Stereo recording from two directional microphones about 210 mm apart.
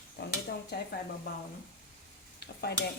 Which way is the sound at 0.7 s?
50° left (ahead or behind).